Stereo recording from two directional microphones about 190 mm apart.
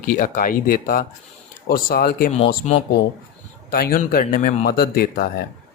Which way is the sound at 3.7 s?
50° left (ahead or behind).